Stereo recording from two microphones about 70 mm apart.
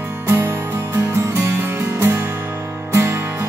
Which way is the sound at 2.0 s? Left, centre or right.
Right.